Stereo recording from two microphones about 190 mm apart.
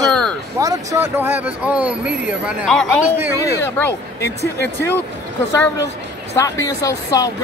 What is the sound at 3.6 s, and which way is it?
Speech, 10° left (ahead or behind).